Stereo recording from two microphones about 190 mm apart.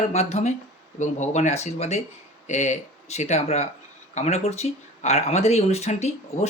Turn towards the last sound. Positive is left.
turn(degrees=35)  # may be behind; listen again after turning